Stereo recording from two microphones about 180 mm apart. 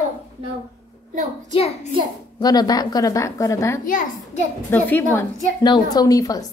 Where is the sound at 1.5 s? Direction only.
35° left (ahead or behind).